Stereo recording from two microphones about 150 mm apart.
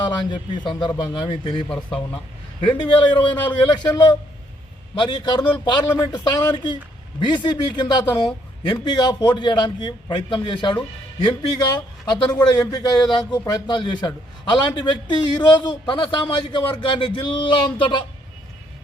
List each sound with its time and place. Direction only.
0.3 s a man's voice: 30° left (ahead or behind)